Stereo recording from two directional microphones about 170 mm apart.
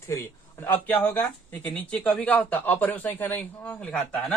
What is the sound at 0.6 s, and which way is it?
A man's voice, 15° left (ahead or behind).